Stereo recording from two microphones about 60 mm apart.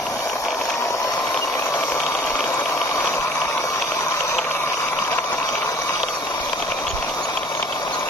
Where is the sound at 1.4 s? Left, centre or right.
Left.